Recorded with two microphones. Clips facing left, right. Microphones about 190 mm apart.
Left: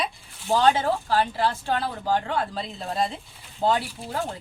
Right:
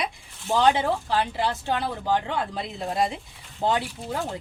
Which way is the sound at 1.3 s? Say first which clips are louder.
Left 1 dB; 20° right (ahead or behind).